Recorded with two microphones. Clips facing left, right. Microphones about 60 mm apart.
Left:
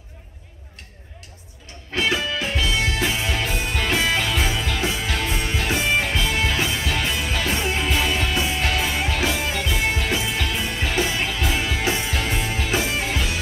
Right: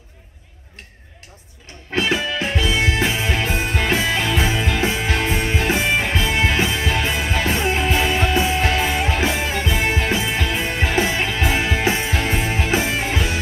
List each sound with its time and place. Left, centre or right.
2.1 s music: right